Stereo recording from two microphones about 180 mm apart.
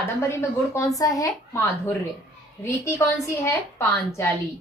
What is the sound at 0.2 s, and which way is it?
A woman's voice, 15° left (ahead or behind).